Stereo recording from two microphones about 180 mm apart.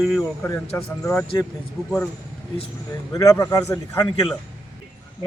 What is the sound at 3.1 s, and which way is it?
Speech, 20° left (ahead or behind).